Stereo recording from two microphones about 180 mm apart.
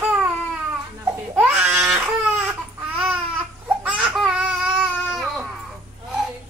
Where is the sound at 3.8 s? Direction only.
5° right (ahead or behind).